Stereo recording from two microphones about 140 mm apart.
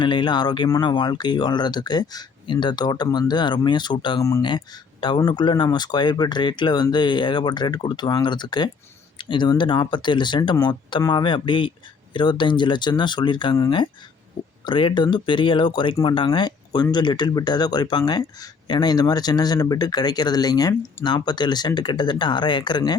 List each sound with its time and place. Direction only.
0.0 s speech: 35° left (ahead or behind)
4.2 s speech: 20° left (ahead or behind)
4.4 s speech: 35° left (ahead or behind)